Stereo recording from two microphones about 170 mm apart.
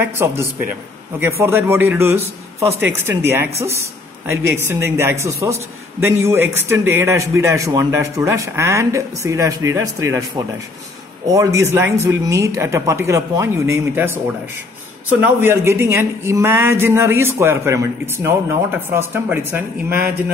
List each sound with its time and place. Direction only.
0.0 s a man's voice: 15° right (ahead or behind)